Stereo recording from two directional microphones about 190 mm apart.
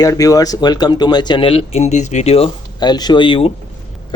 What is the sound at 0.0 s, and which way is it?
Speech, 20° left (ahead or behind).